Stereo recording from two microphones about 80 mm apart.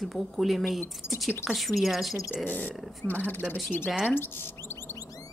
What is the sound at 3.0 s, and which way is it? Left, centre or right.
Speech, left.